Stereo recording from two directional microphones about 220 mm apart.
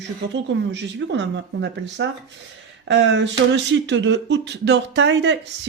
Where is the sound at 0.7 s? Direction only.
55° right (ahead or behind).